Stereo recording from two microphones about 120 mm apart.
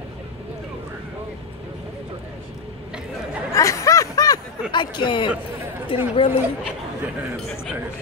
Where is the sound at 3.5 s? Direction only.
25° left (ahead or behind).